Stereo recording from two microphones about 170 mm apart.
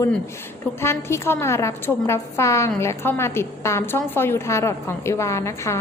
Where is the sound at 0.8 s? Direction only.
15° left (ahead or behind).